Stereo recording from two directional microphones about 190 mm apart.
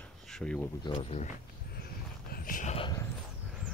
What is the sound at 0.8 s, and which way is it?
Speech, 25° left (ahead or behind).